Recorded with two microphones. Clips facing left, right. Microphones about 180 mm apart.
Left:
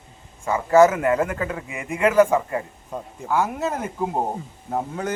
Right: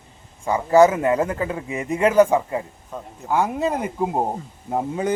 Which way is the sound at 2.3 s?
15° right (ahead or behind).